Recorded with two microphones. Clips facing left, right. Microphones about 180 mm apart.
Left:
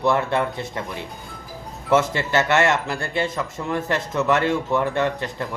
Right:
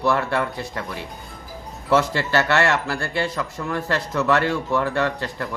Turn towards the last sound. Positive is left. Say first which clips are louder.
# left 1 dB
turn(degrees=20)  # may be behind; listen again after turning